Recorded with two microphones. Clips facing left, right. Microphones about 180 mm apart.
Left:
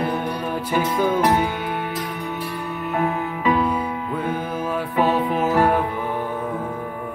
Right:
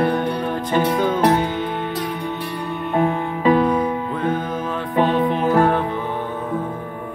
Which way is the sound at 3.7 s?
10° left (ahead or behind).